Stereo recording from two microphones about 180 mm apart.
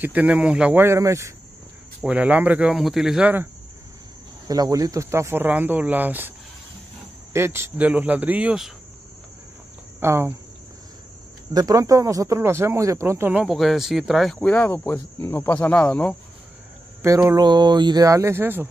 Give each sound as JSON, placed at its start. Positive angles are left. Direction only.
{"t": 0.0, "sound": "speech", "side_deg": -10}
{"t": 4.5, "sound": "speech", "side_deg": -20}
{"t": 7.3, "sound": "speech", "side_deg": -15}
{"t": 9.9, "sound": "speech", "side_deg": -10}
{"t": 11.5, "sound": "speech", "side_deg": -20}
{"t": 17.0, "sound": "speech", "side_deg": -15}